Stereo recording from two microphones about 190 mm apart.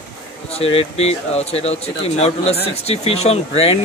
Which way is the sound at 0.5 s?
30° left (ahead or behind).